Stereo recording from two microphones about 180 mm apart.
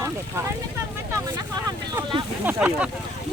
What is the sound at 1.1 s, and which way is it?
Vehicle, 20° right (ahead or behind).